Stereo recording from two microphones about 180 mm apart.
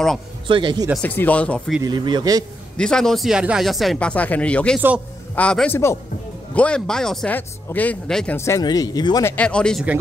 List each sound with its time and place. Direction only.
0.5 s speech: 25° right (ahead or behind)
1.0 s speech: 10° left (ahead or behind)
1.8 s speech: 25° right (ahead or behind)
2.8 s speech: 5° left (ahead or behind)
4.7 s speech: 5° right (ahead or behind)
5.3 s speech: 5° left (ahead or behind)
8.4 s speech: 15° left (ahead or behind)
9.3 s speech: 5° left (ahead or behind)